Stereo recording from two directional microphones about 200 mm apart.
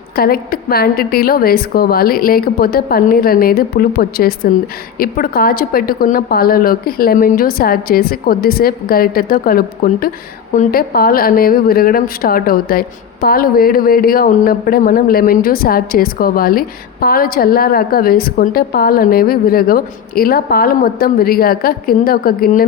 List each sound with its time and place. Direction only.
0.2 s speech: 50° left (ahead or behind)